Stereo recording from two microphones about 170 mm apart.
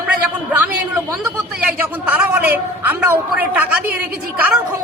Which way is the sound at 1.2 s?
10° right (ahead or behind).